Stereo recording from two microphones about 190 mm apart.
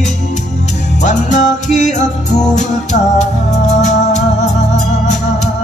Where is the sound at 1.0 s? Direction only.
40° left (ahead or behind).